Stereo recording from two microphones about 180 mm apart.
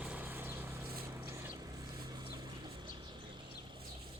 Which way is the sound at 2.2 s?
20° right (ahead or behind).